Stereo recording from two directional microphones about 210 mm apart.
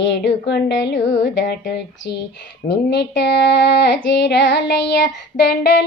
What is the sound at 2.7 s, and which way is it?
Child singing, 55° left (ahead or behind).